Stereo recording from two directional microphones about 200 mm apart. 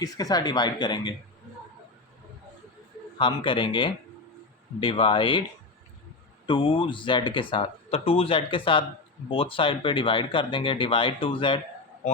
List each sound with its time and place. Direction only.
0.0 s speech: 20° left (ahead or behind)
3.2 s speech: 25° left (ahead or behind)
6.4 s speech: 25° left (ahead or behind)